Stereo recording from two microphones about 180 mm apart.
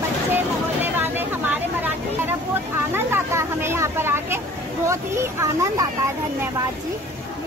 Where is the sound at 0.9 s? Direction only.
10° right (ahead or behind).